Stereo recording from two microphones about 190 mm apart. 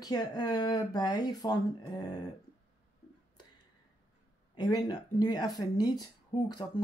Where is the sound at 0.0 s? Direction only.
20° left (ahead or behind).